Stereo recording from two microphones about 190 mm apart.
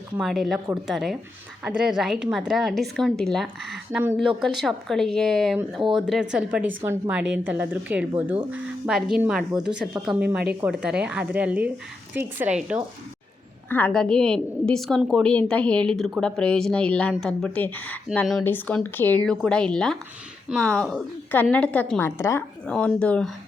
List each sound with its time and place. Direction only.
0.2 s a woman's voice: centre (ahead or behind)
13.7 s a woman's voice: 10° left (ahead or behind)